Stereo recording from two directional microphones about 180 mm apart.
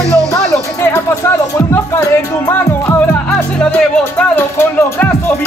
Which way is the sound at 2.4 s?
15° left (ahead or behind).